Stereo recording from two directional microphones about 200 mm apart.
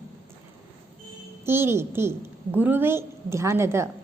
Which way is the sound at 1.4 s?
10° right (ahead or behind).